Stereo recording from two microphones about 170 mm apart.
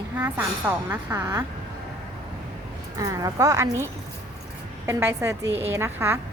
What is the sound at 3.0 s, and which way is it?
Speech, 20° right (ahead or behind).